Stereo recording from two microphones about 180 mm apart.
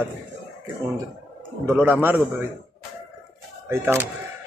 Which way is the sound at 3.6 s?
15° right (ahead or behind).